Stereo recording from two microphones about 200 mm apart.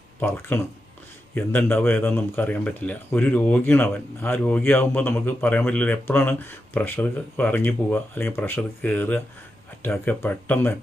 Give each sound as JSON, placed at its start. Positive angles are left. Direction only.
{"t": 0.2, "sound": "speech", "side_deg": 10}